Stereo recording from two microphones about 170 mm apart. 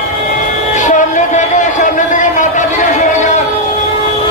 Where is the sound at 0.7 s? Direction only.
45° left (ahead or behind).